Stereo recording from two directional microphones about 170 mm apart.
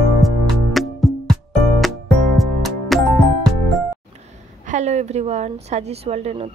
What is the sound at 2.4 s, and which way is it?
Music, centre (ahead or behind).